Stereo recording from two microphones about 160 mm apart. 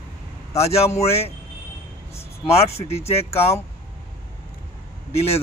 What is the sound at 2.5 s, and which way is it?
Speech, 40° left (ahead or behind).